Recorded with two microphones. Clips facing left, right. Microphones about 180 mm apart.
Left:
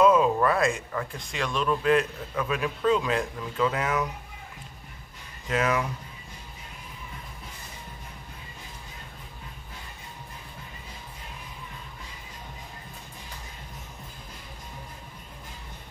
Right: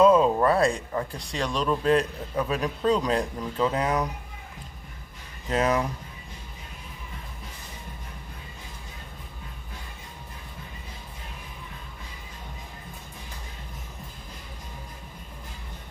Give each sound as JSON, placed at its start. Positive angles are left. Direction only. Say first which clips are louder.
{"t": 0.0, "sound": "speech", "louder": "right 2 dB", "side_deg": -30}
{"t": 5.5, "sound": "speech", "louder": "right 2 dB", "side_deg": -35}